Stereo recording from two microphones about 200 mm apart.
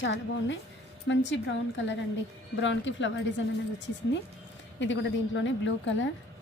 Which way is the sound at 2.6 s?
65° left (ahead or behind).